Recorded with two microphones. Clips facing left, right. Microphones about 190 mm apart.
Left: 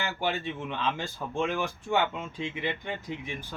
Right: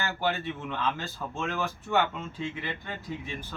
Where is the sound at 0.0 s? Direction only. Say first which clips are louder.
Right 1 dB; 15° left (ahead or behind).